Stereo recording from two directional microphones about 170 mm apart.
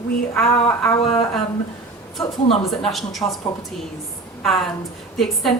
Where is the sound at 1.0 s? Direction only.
35° left (ahead or behind).